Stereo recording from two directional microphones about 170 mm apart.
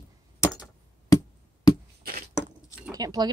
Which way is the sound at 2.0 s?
60° right (ahead or behind).